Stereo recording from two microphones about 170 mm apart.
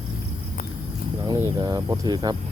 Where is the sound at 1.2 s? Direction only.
20° right (ahead or behind).